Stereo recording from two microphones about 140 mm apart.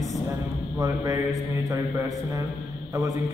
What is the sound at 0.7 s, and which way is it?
A man's voice, 25° right (ahead or behind).